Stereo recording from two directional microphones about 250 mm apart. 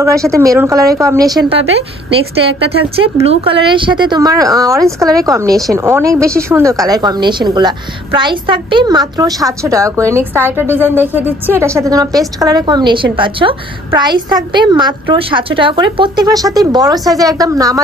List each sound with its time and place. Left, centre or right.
0.0 s a woman's voice: centre